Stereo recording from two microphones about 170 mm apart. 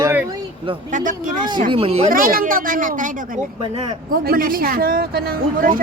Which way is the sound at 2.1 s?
55° right (ahead or behind).